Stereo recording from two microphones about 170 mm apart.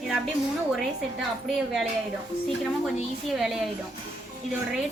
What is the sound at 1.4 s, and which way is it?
Speech, centre (ahead or behind).